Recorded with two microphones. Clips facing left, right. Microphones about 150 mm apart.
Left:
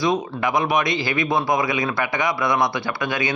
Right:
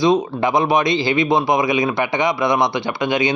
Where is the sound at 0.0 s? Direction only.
20° right (ahead or behind).